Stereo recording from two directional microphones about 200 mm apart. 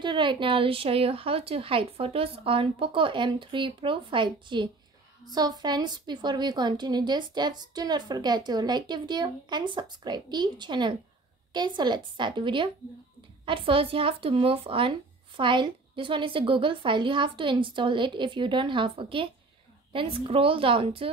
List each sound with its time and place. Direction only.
0.0 s a woman's voice: 25° right (ahead or behind)